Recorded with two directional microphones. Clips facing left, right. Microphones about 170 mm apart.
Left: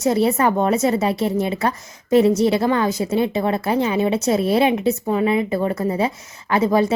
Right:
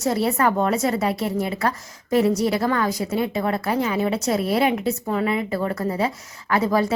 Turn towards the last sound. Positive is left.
turn(degrees=20)  # may be behind; listen again after turning